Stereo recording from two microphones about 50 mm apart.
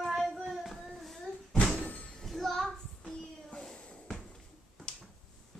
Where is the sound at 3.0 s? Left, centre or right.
Centre.